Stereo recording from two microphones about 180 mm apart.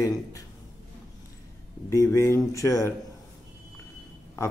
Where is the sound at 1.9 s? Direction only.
15° left (ahead or behind).